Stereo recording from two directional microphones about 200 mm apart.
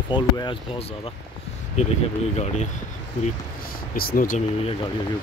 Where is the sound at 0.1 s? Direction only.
25° left (ahead or behind).